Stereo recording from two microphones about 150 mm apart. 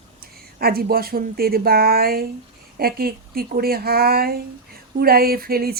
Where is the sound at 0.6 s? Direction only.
90° right.